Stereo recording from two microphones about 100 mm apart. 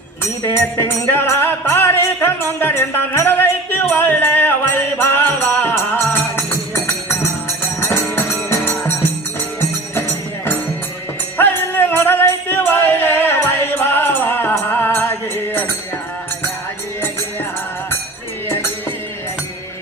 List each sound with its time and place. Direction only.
0.4 s music: 20° left (ahead or behind)
11.3 s music: 20° left (ahead or behind)
18.4 s music: 25° left (ahead or behind)